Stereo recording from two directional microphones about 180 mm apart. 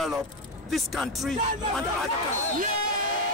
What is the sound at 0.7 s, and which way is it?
Speech, centre (ahead or behind).